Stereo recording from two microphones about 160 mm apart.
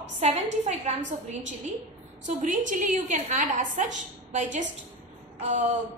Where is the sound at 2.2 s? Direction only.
55° right (ahead or behind).